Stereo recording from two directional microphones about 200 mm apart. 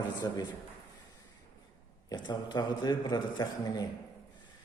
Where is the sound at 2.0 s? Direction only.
20° left (ahead or behind).